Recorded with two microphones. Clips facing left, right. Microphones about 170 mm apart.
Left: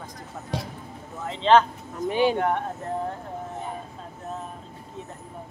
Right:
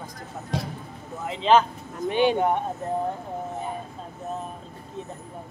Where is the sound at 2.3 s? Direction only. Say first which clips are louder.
Right 2 dB; 15° right (ahead or behind).